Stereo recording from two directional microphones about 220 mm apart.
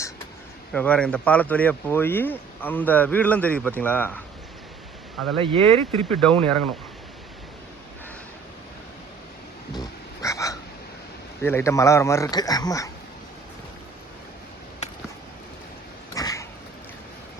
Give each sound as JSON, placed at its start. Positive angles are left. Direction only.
{"t": 0.7, "sound": "speech", "side_deg": 5}
{"t": 5.4, "sound": "speech", "side_deg": -25}
{"t": 6.1, "sound": "speech", "side_deg": 5}
{"t": 9.7, "sound": "a sound", "side_deg": 15}
{"t": 11.4, "sound": "speech", "side_deg": 10}
{"t": 16.1, "sound": "a sound", "side_deg": 15}